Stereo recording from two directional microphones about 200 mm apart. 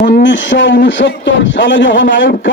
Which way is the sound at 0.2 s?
65° left (ahead or behind).